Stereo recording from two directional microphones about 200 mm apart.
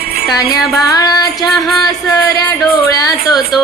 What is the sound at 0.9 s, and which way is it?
Music, 20° left (ahead or behind).